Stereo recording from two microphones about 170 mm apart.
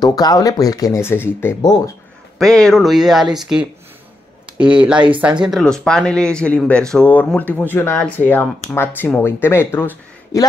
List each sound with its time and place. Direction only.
0.0 s speech: 25° left (ahead or behind)
2.3 s speech: 5° left (ahead or behind)
4.6 s speech: 5° right (ahead or behind); by 10.4 s 15° left (ahead or behind)